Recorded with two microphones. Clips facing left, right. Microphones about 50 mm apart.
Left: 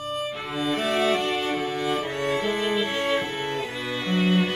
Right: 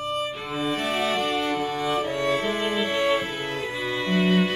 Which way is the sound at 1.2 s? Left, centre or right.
Centre.